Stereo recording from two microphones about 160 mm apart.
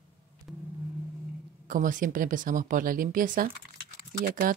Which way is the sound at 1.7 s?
55° right (ahead or behind).